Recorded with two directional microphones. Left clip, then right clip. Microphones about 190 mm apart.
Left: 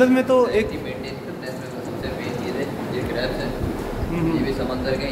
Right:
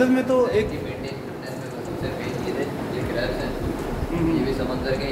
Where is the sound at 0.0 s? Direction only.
10° left (ahead or behind).